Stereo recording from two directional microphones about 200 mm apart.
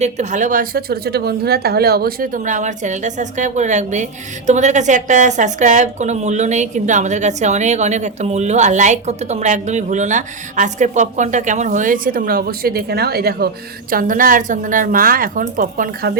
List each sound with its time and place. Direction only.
0.0 s a woman's voice: 35° right (ahead or behind)